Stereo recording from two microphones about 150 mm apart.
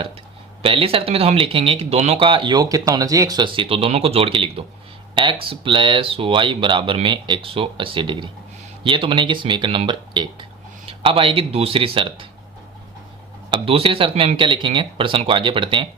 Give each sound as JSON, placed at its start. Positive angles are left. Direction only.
{"t": 0.6, "sound": "speech", "side_deg": -35}
{"t": 13.5, "sound": "speech", "side_deg": -35}